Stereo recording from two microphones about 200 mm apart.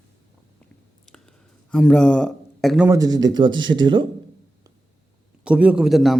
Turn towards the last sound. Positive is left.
turn(degrees=0)  # may be behind; listen again after turning